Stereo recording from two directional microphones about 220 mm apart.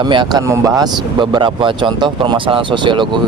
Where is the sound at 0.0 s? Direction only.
20° right (ahead or behind).